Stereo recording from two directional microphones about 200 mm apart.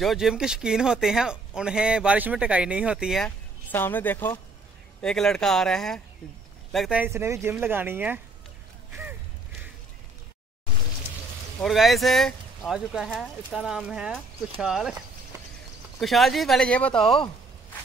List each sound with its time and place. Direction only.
0.0 s speech: centre (ahead or behind)
3.3 s speech: 10° left (ahead or behind); by 8.2 s 10° right (ahead or behind)
11.6 s speech: centre (ahead or behind)
16.0 s speech: centre (ahead or behind)